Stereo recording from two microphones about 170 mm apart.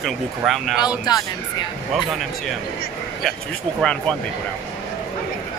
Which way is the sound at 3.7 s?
5° left (ahead or behind).